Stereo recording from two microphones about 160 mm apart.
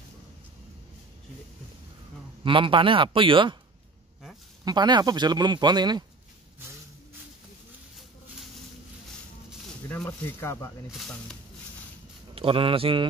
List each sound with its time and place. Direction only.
2.4 s speech: 30° right (ahead or behind)
4.6 s speech: 25° right (ahead or behind)
9.8 s speech: 15° left (ahead or behind)
10.9 s speech: 5° left (ahead or behind)
12.4 s speech: 35° right (ahead or behind)